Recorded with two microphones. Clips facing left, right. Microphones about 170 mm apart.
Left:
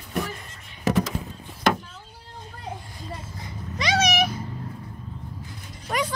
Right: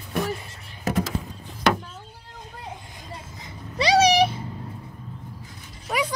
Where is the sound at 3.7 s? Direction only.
35° right (ahead or behind).